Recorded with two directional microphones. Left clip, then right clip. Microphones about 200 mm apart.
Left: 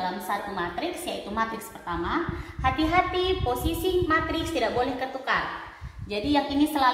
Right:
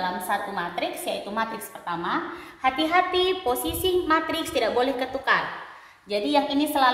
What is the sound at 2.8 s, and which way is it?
A woman's voice, 45° right (ahead or behind).